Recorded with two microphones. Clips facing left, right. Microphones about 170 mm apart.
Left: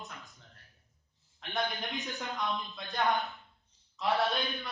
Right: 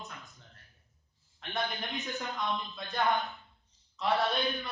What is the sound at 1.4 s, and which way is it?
Speech, centre (ahead or behind).